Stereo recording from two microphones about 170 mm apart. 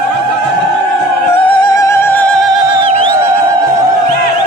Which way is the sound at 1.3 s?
25° left (ahead or behind).